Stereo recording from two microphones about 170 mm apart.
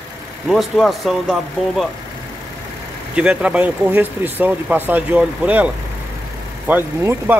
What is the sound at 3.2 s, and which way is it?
Speech, 5° right (ahead or behind).